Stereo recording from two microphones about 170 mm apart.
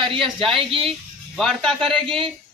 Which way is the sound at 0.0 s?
30° right (ahead or behind).